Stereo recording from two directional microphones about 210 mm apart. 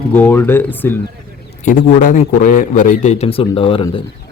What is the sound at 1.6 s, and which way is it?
A man's voice, 40° left (ahead or behind).